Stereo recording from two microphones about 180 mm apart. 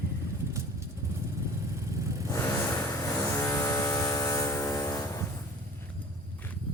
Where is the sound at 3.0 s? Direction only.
15° left (ahead or behind).